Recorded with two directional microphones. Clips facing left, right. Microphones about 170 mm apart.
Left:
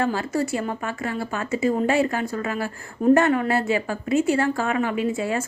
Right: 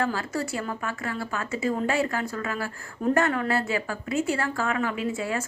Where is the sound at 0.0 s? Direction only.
25° left (ahead or behind).